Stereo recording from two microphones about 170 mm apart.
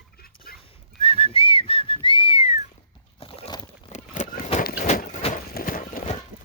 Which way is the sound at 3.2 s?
35° left (ahead or behind).